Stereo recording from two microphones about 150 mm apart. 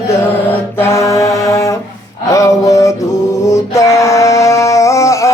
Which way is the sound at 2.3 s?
20° left (ahead or behind).